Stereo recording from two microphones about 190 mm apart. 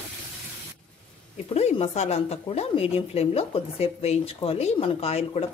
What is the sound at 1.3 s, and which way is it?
Speech, 35° left (ahead or behind).